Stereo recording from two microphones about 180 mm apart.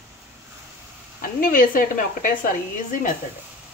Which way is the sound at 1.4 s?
50° left (ahead or behind).